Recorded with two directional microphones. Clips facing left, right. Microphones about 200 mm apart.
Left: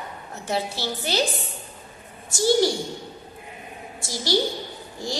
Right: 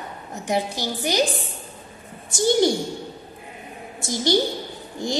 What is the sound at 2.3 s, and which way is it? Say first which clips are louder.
Speech: right 1 dB; 20° right (ahead or behind).